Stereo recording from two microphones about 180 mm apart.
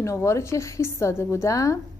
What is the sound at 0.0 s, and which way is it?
A woman's voice, 15° left (ahead or behind).